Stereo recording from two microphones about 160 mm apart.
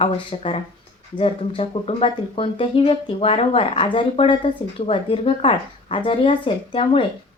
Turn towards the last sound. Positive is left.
turn(degrees=35)  # may be behind; listen again after turning